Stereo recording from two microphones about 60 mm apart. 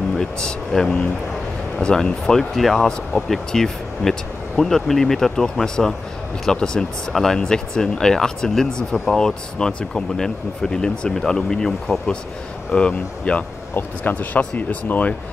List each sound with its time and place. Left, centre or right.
0.2 s speech: centre
13.7 s speech: left